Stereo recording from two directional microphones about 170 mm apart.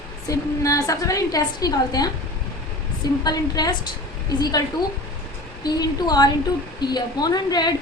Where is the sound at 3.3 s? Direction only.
20° left (ahead or behind).